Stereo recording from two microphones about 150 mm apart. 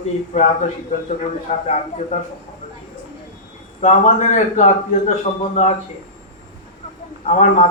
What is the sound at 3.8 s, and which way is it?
Speech, 50° left (ahead or behind).